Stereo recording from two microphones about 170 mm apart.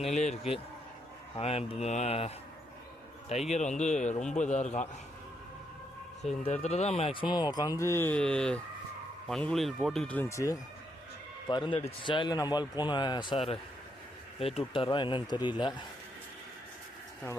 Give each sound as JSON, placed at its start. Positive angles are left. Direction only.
{"t": 0.0, "sound": "speech", "side_deg": 40}
{"t": 3.3, "sound": "a man's voice", "side_deg": 35}
{"t": 6.4, "sound": "speech", "side_deg": 40}